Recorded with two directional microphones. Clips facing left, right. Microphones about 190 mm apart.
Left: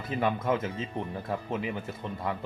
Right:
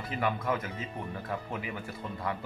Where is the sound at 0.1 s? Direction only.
25° left (ahead or behind).